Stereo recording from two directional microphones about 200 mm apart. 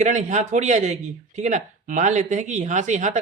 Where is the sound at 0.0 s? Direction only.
35° right (ahead or behind).